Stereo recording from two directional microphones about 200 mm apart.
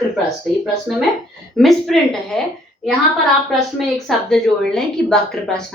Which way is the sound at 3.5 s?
Centre (ahead or behind).